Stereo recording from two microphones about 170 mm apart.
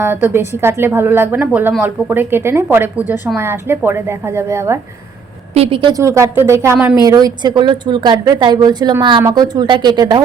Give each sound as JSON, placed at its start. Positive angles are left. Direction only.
{"t": 0.0, "sound": "a woman's voice", "side_deg": -10}
{"t": 5.5, "sound": "a woman's voice", "side_deg": -30}
{"t": 6.0, "sound": "a woman's voice", "side_deg": -15}